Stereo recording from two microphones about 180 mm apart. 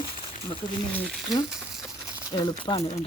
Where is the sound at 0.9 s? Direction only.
5° left (ahead or behind).